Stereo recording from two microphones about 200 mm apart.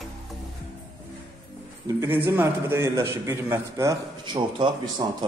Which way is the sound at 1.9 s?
15° right (ahead or behind).